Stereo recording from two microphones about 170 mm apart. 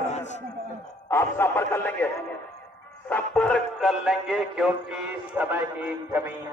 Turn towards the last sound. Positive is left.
turn(degrees=-10)  # may be behind; listen again after turning